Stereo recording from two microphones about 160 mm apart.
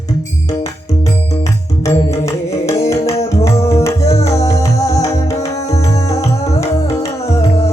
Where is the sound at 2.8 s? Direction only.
40° left (ahead or behind).